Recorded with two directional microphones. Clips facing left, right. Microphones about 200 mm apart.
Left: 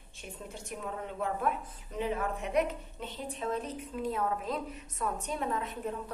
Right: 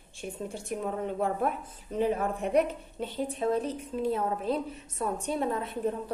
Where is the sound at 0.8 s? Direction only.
35° right (ahead or behind).